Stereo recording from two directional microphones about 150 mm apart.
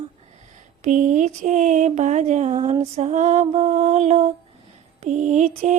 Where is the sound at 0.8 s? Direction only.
55° right (ahead or behind).